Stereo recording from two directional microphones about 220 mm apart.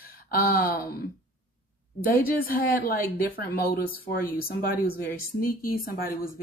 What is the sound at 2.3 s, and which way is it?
A woman's voice, 40° left (ahead or behind).